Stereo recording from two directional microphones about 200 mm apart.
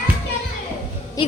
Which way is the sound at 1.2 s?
20° left (ahead or behind).